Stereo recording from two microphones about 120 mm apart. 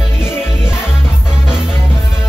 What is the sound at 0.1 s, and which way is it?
Music, 20° left (ahead or behind).